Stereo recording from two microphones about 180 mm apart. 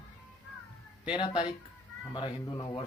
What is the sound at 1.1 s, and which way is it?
Speech, 25° left (ahead or behind).